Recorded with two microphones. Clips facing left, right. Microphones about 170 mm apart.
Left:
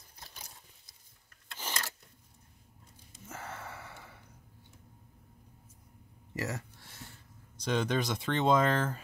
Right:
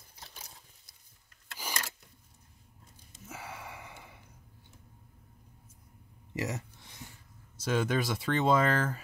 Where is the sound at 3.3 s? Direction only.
10° right (ahead or behind).